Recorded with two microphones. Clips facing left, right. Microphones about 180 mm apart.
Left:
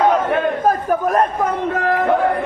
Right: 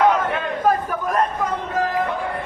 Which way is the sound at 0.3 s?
50° left (ahead or behind).